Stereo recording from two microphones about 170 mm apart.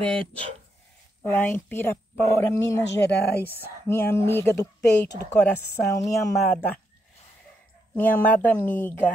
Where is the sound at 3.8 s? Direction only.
15° left (ahead or behind).